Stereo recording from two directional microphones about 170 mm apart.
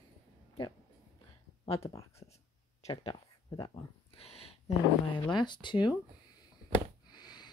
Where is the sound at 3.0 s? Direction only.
30° left (ahead or behind).